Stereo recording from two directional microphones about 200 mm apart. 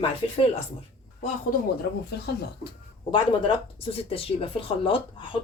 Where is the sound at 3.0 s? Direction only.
25° left (ahead or behind).